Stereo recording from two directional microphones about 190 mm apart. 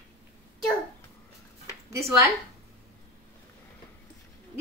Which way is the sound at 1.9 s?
15° right (ahead or behind).